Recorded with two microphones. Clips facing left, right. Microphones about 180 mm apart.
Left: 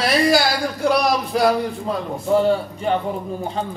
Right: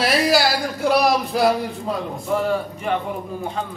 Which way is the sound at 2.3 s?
30° left (ahead or behind).